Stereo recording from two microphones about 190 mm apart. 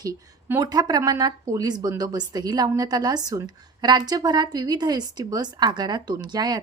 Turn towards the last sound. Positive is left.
turn(degrees=-20)  # may be behind; listen again after turning